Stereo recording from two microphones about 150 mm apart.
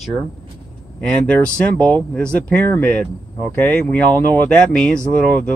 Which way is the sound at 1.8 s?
5° left (ahead or behind).